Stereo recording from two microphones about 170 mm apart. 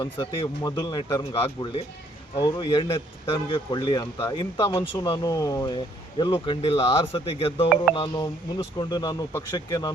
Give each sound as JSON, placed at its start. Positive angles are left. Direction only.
{"t": 0.0, "sound": "speech", "side_deg": 30}